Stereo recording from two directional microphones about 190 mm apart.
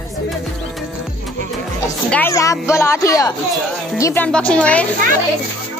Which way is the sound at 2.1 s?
15° left (ahead or behind).